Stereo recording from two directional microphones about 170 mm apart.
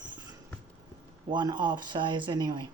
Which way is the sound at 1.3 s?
25° right (ahead or behind).